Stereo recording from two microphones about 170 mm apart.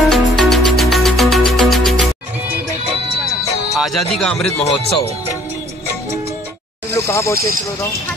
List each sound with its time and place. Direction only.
0.1 s music: centre (ahead or behind)
3.7 s speech: centre (ahead or behind)
6.9 s a sound: 15° left (ahead or behind)